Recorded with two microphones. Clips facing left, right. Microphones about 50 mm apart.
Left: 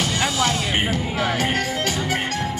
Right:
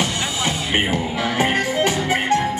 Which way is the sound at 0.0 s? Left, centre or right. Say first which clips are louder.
Left 1 dB; centre.